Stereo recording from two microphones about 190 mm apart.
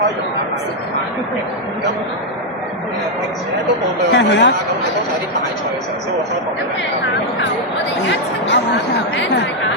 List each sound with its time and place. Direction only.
4.1 s speech: 70° left (ahead or behind)
8.0 s speech: 65° left (ahead or behind)